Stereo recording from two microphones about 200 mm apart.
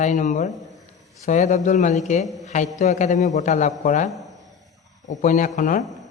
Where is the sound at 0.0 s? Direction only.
40° left (ahead or behind).